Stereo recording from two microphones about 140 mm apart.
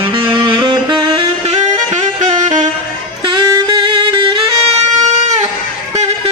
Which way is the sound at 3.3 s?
35° right (ahead or behind).